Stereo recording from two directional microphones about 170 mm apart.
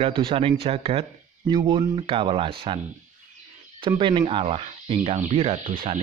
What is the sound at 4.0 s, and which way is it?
Speech, 30° right (ahead or behind).